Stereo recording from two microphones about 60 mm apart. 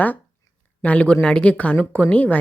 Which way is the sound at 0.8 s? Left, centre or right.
Left.